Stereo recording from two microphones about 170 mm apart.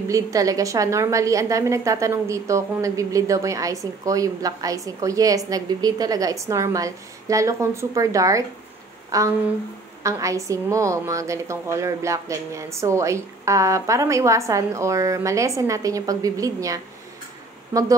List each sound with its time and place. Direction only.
0.1 s a woman's voice: 20° right (ahead or behind)